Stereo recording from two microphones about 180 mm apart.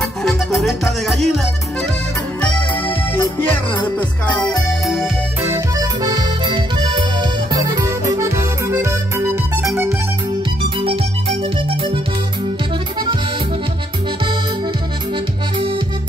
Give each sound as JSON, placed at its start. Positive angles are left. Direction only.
{"t": 0.2, "sound": "music", "side_deg": 0}
{"t": 4.4, "sound": "music", "side_deg": 0}
{"t": 5.4, "sound": "accordion", "side_deg": -15}
{"t": 10.8, "sound": "music", "side_deg": -30}